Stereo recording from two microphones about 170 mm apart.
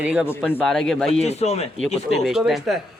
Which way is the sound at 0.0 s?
5° right (ahead or behind).